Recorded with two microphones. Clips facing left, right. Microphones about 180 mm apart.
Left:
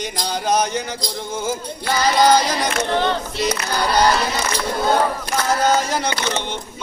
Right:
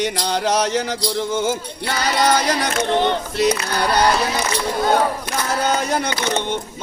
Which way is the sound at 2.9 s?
20° right (ahead or behind).